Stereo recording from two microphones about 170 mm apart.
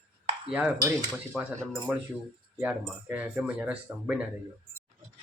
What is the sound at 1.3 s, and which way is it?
Speech, 10° right (ahead or behind).